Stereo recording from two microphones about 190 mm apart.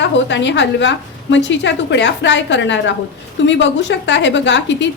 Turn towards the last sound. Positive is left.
turn(degrees=70)  # may be behind; listen again after turning